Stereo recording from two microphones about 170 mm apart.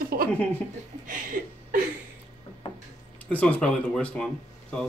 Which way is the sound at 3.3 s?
10° left (ahead or behind).